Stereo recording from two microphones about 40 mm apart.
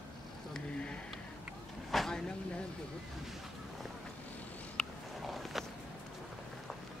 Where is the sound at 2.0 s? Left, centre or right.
Centre.